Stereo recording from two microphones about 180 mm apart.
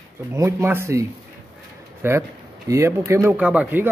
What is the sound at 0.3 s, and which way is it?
Speech, 15° right (ahead or behind).